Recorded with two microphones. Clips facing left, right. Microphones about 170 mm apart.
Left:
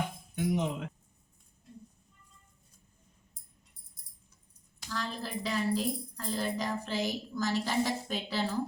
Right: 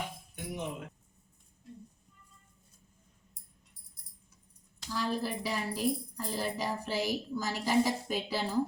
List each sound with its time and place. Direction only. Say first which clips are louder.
0.3 s speech: left 8 dB; 90° left
4.9 s speech: right 4 dB; 10° right (ahead or behind)